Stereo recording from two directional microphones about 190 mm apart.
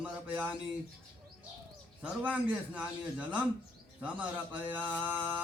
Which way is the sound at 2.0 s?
5° right (ahead or behind).